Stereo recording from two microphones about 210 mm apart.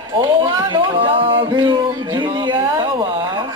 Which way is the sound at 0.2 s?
15° right (ahead or behind).